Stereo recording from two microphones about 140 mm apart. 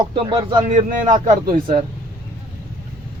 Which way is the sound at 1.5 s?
60° right (ahead or behind).